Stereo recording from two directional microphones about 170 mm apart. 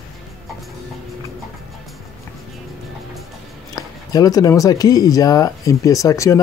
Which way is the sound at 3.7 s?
20° left (ahead or behind).